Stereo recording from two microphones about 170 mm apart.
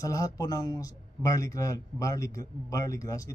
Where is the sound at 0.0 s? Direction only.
20° left (ahead or behind).